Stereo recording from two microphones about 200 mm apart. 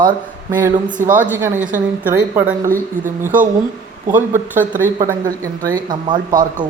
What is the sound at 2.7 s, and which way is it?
Speech, 45° right (ahead or behind).